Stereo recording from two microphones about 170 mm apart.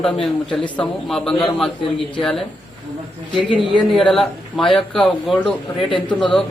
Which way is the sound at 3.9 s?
Centre (ahead or behind).